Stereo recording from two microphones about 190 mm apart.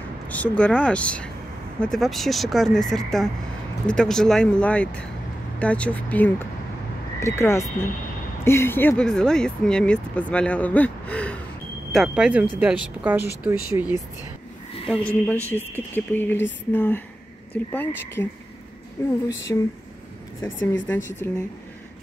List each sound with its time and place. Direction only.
0.3 s speech: 5° left (ahead or behind); by 13.9 s 10° right (ahead or behind)
14.9 s speech: 5° left (ahead or behind)
20.8 s speech: 10° left (ahead or behind)